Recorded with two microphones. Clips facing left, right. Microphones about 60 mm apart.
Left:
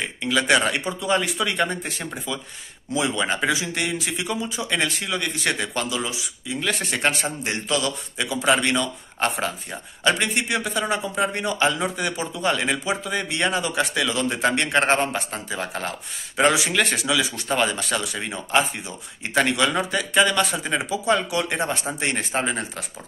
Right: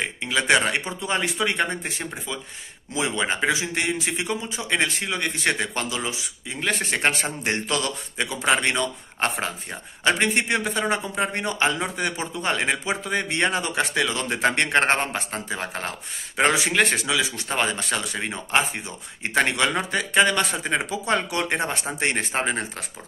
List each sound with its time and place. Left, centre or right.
0.2 s speech: right
17.1 s speech: right
20.0 s speech: right
22.0 s speech: right